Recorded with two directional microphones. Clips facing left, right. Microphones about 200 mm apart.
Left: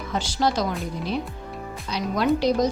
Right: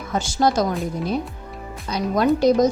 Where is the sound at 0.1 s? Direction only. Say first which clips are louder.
Right 4 dB; 45° right (ahead or behind).